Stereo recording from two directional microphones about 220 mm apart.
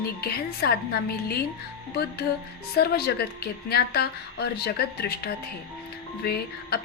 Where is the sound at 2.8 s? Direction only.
45° left (ahead or behind).